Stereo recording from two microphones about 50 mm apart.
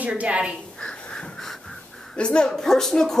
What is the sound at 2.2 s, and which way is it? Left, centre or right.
Speech, left.